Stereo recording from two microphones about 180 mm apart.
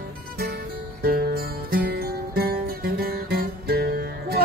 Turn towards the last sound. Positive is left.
turn(degrees=-60)  # may be behind; listen again after turning